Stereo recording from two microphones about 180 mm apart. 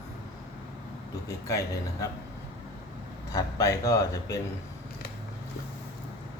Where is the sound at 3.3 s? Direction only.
20° left (ahead or behind).